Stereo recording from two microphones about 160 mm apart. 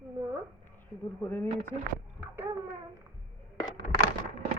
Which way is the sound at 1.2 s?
10° left (ahead or behind).